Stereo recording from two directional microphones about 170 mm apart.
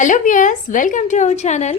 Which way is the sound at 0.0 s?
50° left (ahead or behind).